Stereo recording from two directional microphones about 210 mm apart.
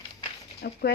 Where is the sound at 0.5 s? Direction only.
50° left (ahead or behind).